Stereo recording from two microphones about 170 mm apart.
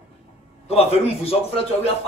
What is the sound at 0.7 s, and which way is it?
Speech, 35° left (ahead or behind).